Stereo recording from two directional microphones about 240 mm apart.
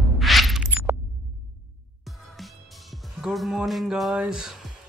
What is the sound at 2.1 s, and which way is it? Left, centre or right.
Speech, centre.